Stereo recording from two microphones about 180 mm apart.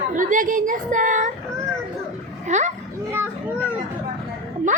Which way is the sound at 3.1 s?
15° right (ahead or behind).